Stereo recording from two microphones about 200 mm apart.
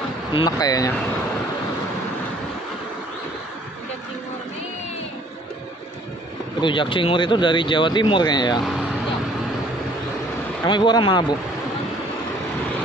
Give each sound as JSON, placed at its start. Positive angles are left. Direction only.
{"t": 0.3, "sound": "speech", "side_deg": 20}
{"t": 6.6, "sound": "speech", "side_deg": 25}
{"t": 10.6, "sound": "speech", "side_deg": 20}